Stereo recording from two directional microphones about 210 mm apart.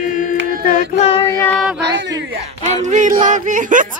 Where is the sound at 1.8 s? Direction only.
55° right (ahead or behind).